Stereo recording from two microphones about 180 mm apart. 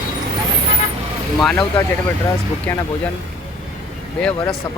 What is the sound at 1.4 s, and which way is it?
Speech, 5° left (ahead or behind).